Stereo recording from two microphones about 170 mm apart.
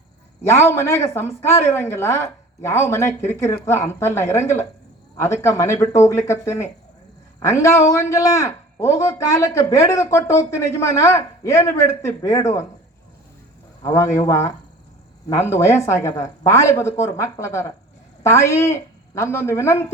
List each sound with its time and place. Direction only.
0.4 s speech: 15° left (ahead or behind)
13.8 s speech: 15° left (ahead or behind)